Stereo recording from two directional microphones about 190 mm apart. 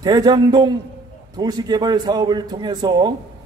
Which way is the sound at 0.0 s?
20° right (ahead or behind).